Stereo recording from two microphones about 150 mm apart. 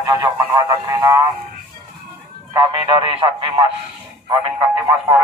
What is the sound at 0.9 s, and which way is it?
Music, 15° right (ahead or behind).